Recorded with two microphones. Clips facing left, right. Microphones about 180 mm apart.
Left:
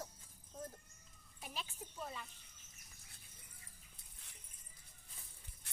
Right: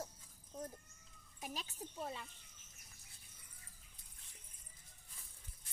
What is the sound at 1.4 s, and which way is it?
Speech, 40° right (ahead or behind).